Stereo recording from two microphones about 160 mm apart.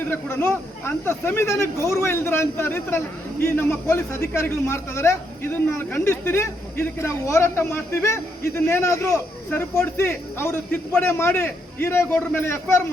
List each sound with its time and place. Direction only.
0.0 s a man's voice: 15° left (ahead or behind)